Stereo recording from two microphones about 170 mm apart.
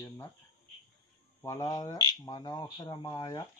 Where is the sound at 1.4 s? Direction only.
20° left (ahead or behind).